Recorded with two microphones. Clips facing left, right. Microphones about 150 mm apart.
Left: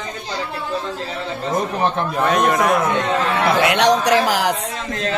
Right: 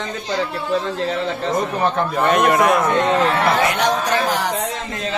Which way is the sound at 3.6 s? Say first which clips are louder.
Left 3 dB; 75° left (ahead or behind).